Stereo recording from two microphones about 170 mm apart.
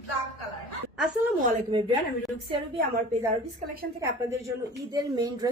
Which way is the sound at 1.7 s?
30° right (ahead or behind).